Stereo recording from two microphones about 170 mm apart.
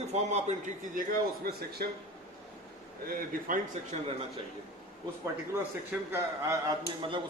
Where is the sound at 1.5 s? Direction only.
65° right (ahead or behind).